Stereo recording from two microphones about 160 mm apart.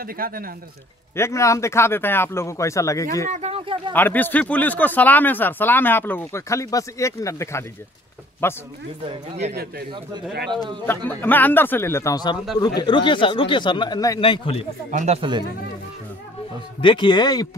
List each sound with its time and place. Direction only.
0.0 s speech: 65° right (ahead or behind)
1.1 s speech: 15° left (ahead or behind)
3.3 s speech: 40° right (ahead or behind)
3.9 s speech: 10° left (ahead or behind)
9.5 s speech: 80° right
11.1 s speech: 10° left (ahead or behind); by 14.7 s 35° left (ahead or behind)
14.9 s speech: 50° right (ahead or behind)
16.8 s speech: 30° left (ahead or behind)